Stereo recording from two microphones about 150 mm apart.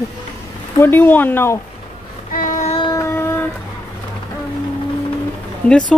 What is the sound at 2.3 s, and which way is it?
Child singing, 60° left (ahead or behind).